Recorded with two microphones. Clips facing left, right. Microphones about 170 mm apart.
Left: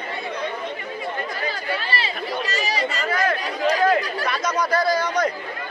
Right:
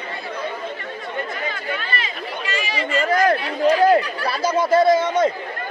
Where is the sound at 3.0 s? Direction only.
40° right (ahead or behind); by 5.3 s 25° right (ahead or behind).